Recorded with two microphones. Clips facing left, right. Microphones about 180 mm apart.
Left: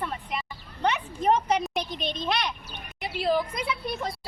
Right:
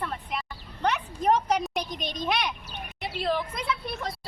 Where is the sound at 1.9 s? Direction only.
45° right (ahead or behind).